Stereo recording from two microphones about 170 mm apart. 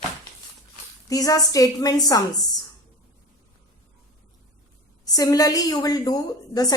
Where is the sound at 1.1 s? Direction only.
20° left (ahead or behind).